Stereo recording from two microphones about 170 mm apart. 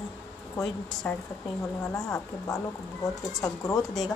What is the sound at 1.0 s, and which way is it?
A woman's voice, 10° left (ahead or behind).